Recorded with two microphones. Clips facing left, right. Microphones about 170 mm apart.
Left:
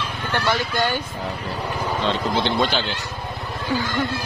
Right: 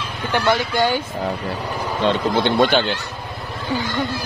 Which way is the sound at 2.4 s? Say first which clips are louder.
Right 8 dB; 55° right (ahead or behind).